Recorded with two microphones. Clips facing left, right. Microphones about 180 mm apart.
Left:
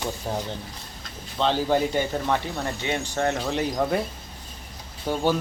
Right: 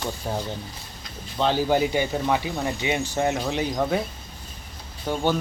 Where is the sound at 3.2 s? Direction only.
Centre (ahead or behind).